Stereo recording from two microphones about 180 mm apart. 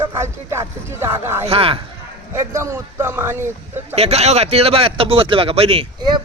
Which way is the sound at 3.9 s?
35° right (ahead or behind).